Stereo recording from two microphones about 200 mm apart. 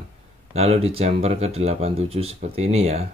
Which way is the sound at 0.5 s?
30° right (ahead or behind).